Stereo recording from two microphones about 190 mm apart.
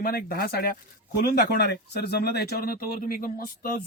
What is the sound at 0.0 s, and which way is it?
Speech, 50° left (ahead or behind).